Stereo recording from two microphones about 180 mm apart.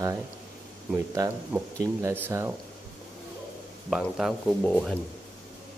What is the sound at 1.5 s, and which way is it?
Speech, 15° right (ahead or behind).